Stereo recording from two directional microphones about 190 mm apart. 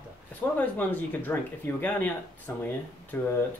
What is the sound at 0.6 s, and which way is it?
Speech, 10° left (ahead or behind).